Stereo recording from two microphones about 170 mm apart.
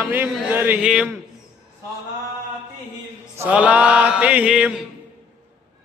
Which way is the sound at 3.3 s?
10° right (ahead or behind).